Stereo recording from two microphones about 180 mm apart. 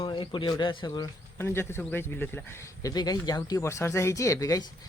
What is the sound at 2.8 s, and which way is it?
Speech, 20° left (ahead or behind).